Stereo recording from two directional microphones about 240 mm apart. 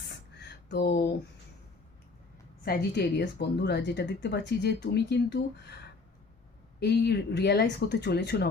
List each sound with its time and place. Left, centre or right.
0.3 s a sound: left
2.6 s speech: left
6.7 s speech: left